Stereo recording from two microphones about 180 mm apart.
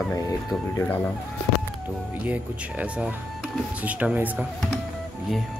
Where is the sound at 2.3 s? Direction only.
5° right (ahead or behind).